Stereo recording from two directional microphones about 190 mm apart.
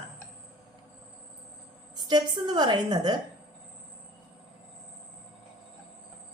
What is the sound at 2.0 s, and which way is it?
A woman's voice, 20° right (ahead or behind).